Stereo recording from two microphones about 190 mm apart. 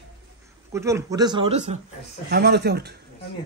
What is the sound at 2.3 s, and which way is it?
Speech, 60° right (ahead or behind).